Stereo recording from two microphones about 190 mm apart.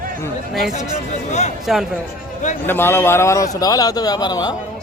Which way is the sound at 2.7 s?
10° left (ahead or behind).